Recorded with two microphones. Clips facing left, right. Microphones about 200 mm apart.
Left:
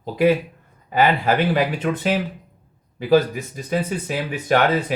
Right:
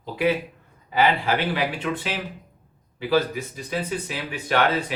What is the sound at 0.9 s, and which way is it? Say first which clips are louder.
Speech: left 3 dB; 45° left (ahead or behind).